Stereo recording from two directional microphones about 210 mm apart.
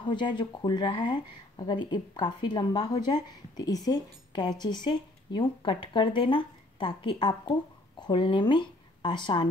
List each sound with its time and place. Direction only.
0.1 s speech: 20° left (ahead or behind)